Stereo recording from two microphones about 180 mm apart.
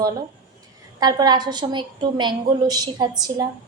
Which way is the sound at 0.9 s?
20° right (ahead or behind).